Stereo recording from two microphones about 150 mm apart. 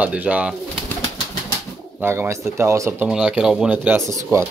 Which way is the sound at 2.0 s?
15° right (ahead or behind).